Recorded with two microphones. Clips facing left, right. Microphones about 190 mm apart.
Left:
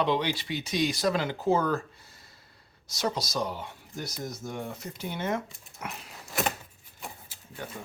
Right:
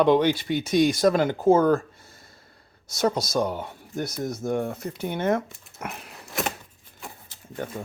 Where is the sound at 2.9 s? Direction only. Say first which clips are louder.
Right 7 dB; 50° right (ahead or behind).